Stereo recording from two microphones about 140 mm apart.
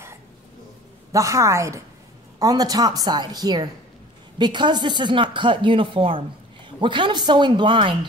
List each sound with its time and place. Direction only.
1.1 s a woman's voice: 20° right (ahead or behind)